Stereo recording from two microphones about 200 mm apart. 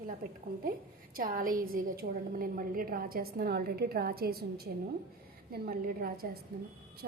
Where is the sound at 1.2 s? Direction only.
45° right (ahead or behind).